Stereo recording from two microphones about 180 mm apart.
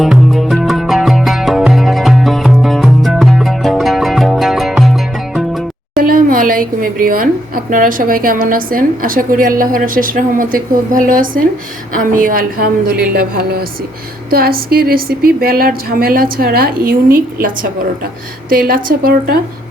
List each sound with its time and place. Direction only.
0.0 s music: centre (ahead or behind)
6.0 s a woman's voice: 50° right (ahead or behind)